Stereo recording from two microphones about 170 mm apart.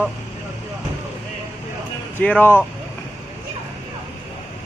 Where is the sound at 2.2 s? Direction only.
10° left (ahead or behind).